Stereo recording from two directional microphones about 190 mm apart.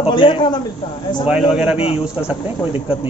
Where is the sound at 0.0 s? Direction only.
25° left (ahead or behind).